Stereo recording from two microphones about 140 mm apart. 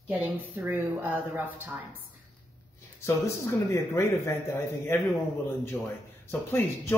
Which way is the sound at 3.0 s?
20° left (ahead or behind).